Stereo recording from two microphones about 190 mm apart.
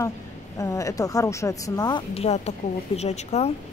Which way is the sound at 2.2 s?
35° left (ahead or behind).